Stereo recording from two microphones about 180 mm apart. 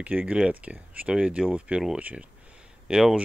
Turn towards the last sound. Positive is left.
turn(degrees=-5)  # may be behind; listen again after turning